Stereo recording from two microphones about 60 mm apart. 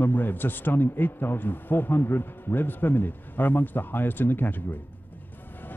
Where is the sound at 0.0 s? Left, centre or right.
Left.